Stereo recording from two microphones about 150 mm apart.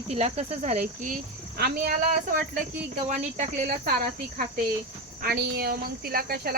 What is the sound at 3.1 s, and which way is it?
Speech, 50° right (ahead or behind).